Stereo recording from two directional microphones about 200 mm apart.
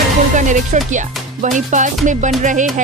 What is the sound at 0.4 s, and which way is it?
Speech, 40° right (ahead or behind).